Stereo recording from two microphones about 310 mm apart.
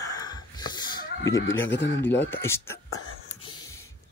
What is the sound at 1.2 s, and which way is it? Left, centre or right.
Speech, left.